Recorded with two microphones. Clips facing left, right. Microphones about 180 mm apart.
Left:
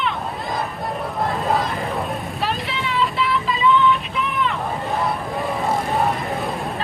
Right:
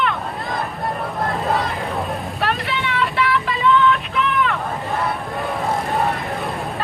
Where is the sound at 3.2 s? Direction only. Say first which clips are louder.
Right 1 dB; 70° right (ahead or behind).